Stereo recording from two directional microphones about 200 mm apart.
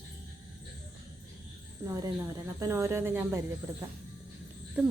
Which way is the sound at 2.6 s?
15° right (ahead or behind).